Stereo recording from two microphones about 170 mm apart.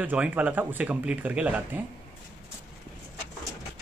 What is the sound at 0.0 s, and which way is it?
Speech, 10° right (ahead or behind).